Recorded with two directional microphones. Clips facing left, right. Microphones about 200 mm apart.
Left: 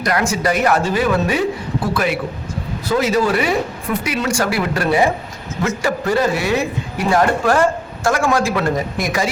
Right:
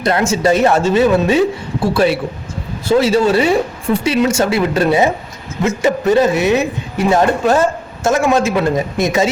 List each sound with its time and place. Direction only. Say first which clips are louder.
0.0 s a man's voice: right 4 dB; 25° right (ahead or behind)